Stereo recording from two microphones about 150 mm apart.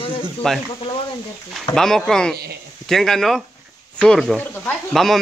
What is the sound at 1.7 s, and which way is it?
Speech, 5° left (ahead or behind).